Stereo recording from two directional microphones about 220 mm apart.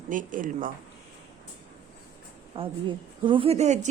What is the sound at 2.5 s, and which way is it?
A woman's voice, 20° right (ahead or behind).